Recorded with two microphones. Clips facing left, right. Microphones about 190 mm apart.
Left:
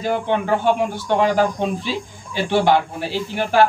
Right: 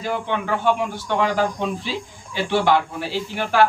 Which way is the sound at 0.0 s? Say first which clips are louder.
Left 4 dB; 40° left (ahead or behind).